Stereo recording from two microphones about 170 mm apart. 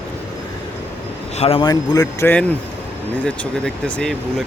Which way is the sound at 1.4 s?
30° left (ahead or behind).